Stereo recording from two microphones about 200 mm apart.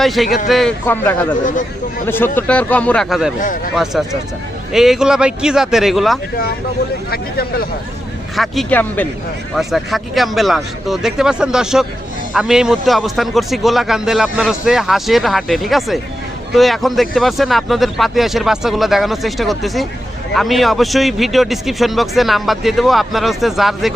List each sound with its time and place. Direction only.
0.0 s a man's voice: centre (ahead or behind)
7.1 s speech: 50° left (ahead or behind)
8.4 s a man's voice: 5° left (ahead or behind)